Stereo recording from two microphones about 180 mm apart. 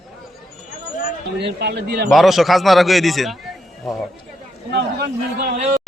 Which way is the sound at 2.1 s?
Centre (ahead or behind).